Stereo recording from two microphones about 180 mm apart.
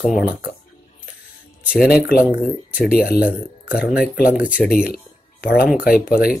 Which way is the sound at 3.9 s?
55° left (ahead or behind).